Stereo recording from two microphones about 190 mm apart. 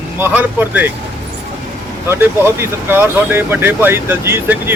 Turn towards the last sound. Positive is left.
turn(degrees=-10)  # may be behind; listen again after turning